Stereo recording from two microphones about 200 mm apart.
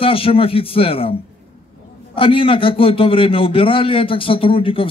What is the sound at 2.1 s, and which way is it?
A man's voice, 25° left (ahead or behind).